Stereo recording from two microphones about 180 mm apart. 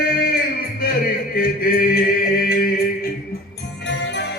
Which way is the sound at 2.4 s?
55° left (ahead or behind).